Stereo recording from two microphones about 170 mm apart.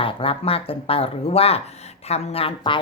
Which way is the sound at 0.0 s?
30° left (ahead or behind).